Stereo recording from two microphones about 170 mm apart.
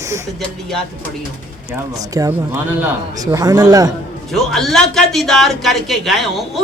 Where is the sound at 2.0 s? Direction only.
20° right (ahead or behind).